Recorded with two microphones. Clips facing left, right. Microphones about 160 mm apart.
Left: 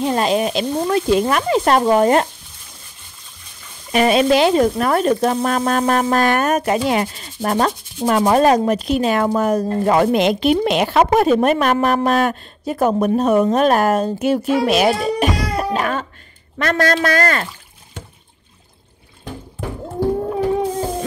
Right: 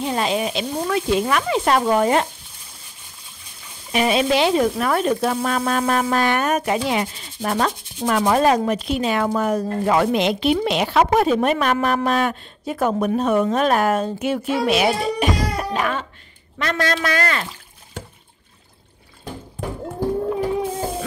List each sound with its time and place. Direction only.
0.0 s speech: 45° left (ahead or behind)
0.8 s speech: 35° left (ahead or behind)
3.9 s speech: 50° left (ahead or behind)